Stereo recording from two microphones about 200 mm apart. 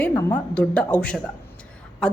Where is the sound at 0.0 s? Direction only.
5° left (ahead or behind).